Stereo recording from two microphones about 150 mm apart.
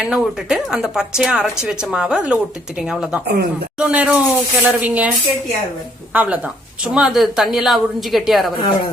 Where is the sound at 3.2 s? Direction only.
90° right.